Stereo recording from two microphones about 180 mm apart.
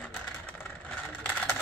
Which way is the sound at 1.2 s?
5° left (ahead or behind).